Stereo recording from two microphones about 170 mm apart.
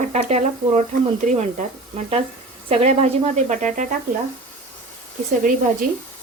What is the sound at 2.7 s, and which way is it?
Speech, 40° right (ahead or behind).